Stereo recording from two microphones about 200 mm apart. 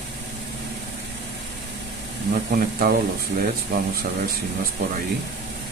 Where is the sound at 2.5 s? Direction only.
45° right (ahead or behind).